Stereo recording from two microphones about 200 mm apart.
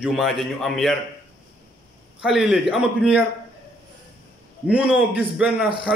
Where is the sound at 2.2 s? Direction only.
5° right (ahead or behind).